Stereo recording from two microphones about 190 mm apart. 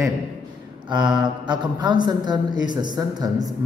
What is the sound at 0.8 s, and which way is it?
Speech, 25° right (ahead or behind).